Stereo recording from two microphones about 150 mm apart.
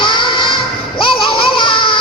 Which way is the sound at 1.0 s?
35° left (ahead or behind).